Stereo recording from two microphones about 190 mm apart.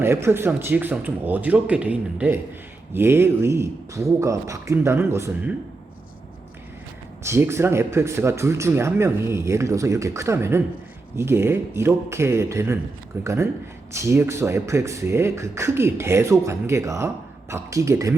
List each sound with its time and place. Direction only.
0.0 s speech: 15° right (ahead or behind)
7.2 s speech: 15° right (ahead or behind)